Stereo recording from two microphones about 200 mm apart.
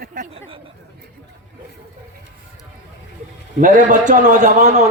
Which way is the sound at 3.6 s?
40° right (ahead or behind).